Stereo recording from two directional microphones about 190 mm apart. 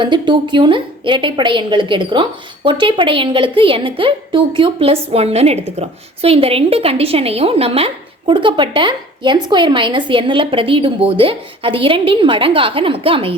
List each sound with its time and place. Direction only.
0.0 s a woman's voice: 25° right (ahead or behind)